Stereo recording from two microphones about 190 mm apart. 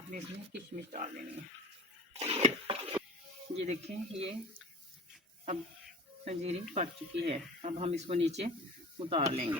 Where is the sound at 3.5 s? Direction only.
35° right (ahead or behind).